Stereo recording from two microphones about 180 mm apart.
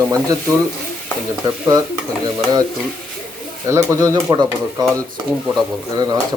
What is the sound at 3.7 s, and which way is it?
Speech, 15° right (ahead or behind).